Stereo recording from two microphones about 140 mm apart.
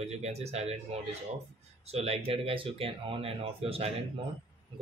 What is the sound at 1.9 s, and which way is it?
Speech, 45° right (ahead or behind).